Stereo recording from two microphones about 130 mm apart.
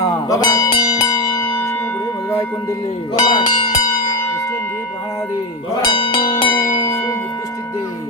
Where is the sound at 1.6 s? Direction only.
20° left (ahead or behind).